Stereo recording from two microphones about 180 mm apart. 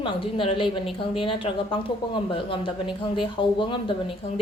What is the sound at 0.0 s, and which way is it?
Speech, 30° left (ahead or behind).